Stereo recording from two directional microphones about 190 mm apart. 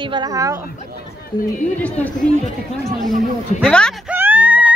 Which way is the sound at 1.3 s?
20° left (ahead or behind).